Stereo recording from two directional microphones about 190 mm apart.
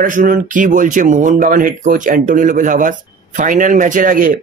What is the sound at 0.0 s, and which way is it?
Speech, 45° right (ahead or behind).